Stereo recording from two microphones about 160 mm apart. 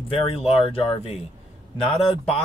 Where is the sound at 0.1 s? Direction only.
35° left (ahead or behind).